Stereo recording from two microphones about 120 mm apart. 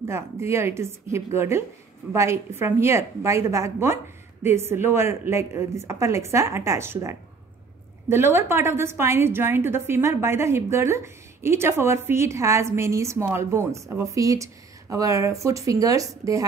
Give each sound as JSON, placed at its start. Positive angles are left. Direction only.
{"t": 0.0, "sound": "a woman's voice", "side_deg": -20}